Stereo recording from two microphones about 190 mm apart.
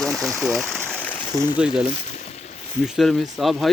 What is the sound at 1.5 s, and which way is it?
Speech, 5° right (ahead or behind).